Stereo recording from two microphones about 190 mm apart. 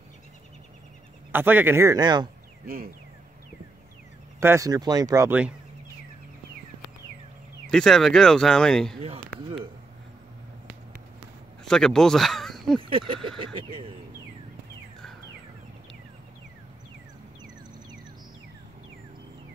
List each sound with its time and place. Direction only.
1.3 s speech: 10° right (ahead or behind)
2.6 s speech: 50° right (ahead or behind)
4.4 s speech: 15° right (ahead or behind)
7.7 s speech: centre (ahead or behind)
9.0 s speech: 30° right (ahead or behind)
11.6 s speech: 5° left (ahead or behind)
12.8 s speech: 25° right (ahead or behind)